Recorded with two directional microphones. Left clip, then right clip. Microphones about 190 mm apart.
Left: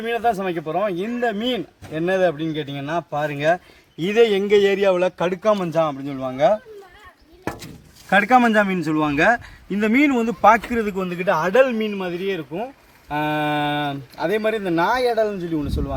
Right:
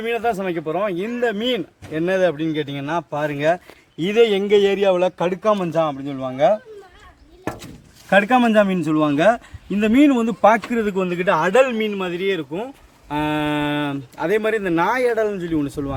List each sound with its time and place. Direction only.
0.0 s speech: 10° right (ahead or behind)
2.5 s speech: 15° right (ahead or behind)
8.1 s speech: 20° right (ahead or behind)